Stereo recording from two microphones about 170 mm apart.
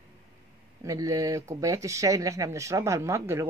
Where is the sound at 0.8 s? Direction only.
20° right (ahead or behind).